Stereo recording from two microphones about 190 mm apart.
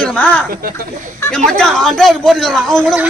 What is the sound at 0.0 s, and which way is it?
A man's voice, 5° left (ahead or behind).